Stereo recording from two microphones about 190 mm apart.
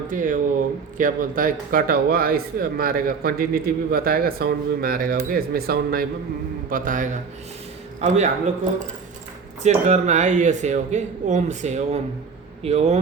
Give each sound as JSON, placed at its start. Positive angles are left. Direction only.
{"t": 0.1, "sound": "a man's voice", "side_deg": -45}
{"t": 9.6, "sound": "speech", "side_deg": -35}